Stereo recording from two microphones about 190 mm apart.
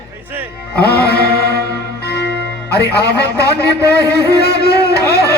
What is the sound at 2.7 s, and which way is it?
Speech, 60° left (ahead or behind).